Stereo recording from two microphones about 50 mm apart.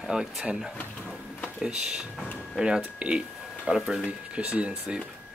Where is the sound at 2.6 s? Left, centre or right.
Centre.